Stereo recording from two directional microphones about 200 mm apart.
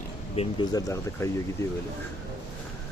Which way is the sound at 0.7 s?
15° left (ahead or behind).